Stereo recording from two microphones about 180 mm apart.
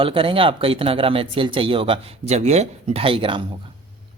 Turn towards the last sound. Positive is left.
turn(degrees=-30)  # may be behind; listen again after turning